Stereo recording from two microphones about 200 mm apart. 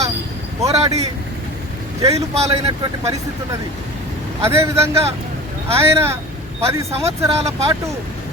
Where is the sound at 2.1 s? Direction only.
30° right (ahead or behind).